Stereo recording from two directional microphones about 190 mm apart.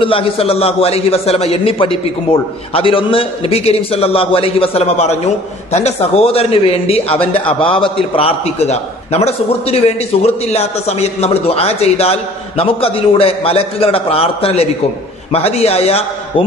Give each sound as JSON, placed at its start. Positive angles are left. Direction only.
{"t": 0.0, "sound": "a man's voice", "side_deg": 30}